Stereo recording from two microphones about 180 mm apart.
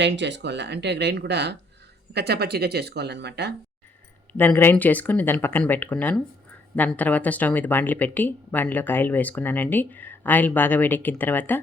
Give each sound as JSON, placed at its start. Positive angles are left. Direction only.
{"t": 0.0, "sound": "speech", "side_deg": -80}
{"t": 4.3, "sound": "speech", "side_deg": 10}